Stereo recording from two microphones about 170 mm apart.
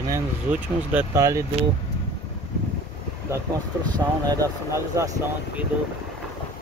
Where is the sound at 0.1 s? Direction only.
15° right (ahead or behind).